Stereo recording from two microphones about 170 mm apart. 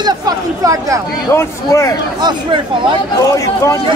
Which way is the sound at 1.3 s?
15° left (ahead or behind).